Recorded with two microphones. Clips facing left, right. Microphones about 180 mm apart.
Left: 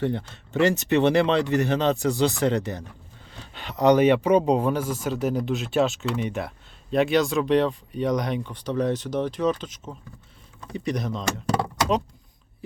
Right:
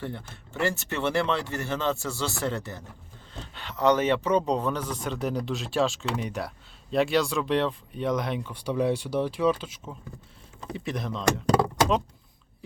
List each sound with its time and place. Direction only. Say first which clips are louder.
0.0 s speech: left 9 dB; 75° left (ahead or behind)
0.6 s speech: left 8 dB; 20° left (ahead or behind); by 11.3 s centre (ahead or behind)